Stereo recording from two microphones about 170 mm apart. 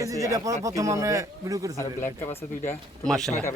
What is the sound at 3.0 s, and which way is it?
Speech, 5° left (ahead or behind).